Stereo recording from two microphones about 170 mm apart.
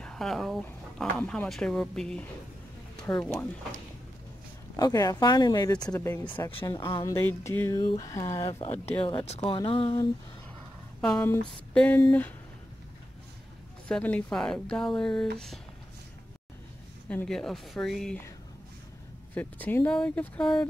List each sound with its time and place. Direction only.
0.0 s speech: 5° left (ahead or behind)
4.7 s speech: 20° left (ahead or behind)
8.5 s speech: 35° left (ahead or behind)
11.0 s speech: 5° left (ahead or behind)
13.8 s speech: 5° left (ahead or behind)
17.1 s speech: 5° left (ahead or behind)
19.3 s speech: 10° left (ahead or behind)